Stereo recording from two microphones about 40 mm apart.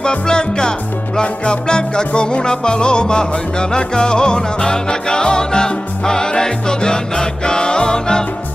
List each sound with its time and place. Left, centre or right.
0.0 s music: left